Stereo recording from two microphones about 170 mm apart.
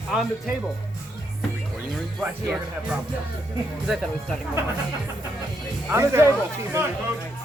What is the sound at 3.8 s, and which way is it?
Speech, centre (ahead or behind).